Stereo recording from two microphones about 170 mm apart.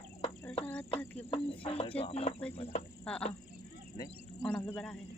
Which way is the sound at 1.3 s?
30° left (ahead or behind).